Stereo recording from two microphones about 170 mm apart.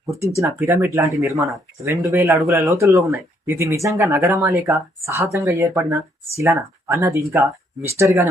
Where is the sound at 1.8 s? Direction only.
20° right (ahead or behind).